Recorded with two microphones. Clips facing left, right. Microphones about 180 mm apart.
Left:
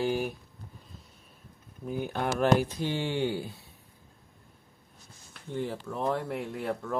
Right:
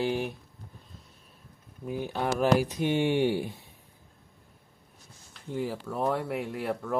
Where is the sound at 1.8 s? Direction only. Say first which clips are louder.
Right 1 dB; centre (ahead or behind).